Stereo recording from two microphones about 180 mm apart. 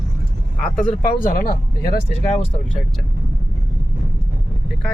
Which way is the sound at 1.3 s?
50° left (ahead or behind).